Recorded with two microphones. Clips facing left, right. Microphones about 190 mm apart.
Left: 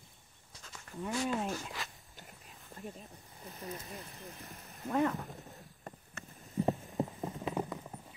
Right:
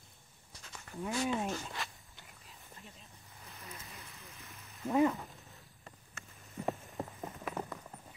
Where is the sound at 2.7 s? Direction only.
45° left (ahead or behind).